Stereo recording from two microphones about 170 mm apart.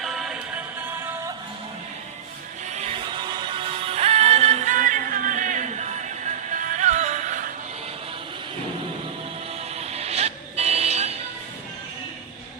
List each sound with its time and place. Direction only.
0.0 s music: centre (ahead or behind)
2.6 s music: 40° right (ahead or behind)
3.1 s music: 25° right (ahead or behind); by 7.5 s 45° right (ahead or behind)
9.7 s vehicle: 40° right (ahead or behind)